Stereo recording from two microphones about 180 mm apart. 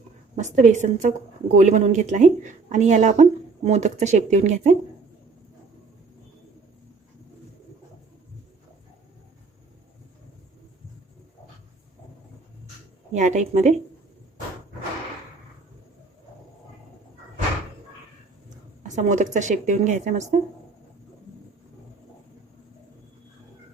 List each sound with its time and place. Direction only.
0.3 s speech: 40° right (ahead or behind)
13.1 s speech: 40° right (ahead or behind)
18.8 s speech: 40° right (ahead or behind)